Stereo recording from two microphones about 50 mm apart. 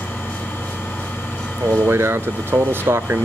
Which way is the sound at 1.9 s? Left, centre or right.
Right.